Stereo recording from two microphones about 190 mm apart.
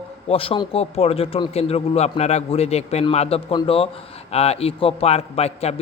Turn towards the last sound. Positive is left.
turn(degrees=35)  # may be behind; listen again after turning